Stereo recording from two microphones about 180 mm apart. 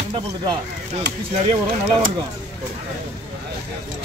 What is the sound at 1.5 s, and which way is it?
Speech, 40° right (ahead or behind).